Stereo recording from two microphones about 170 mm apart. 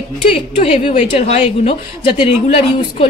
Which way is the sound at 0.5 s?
45° left (ahead or behind).